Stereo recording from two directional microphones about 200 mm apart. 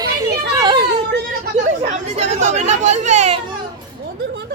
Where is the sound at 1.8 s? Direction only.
35° right (ahead or behind).